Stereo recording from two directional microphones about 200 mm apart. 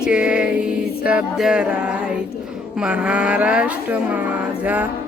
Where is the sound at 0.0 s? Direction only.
5° right (ahead or behind).